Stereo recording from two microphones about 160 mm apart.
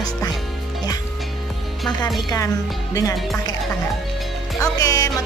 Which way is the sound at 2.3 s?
20° left (ahead or behind).